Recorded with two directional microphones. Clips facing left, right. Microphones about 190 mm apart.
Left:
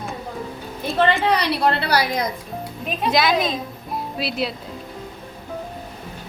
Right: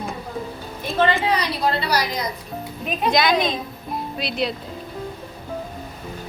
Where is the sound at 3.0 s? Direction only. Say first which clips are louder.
Even; centre (ahead or behind).